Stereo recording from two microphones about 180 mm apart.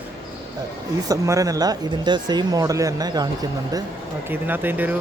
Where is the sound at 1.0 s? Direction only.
20° right (ahead or behind).